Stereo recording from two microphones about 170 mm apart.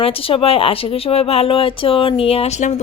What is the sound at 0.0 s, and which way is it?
A woman's voice, 35° left (ahead or behind).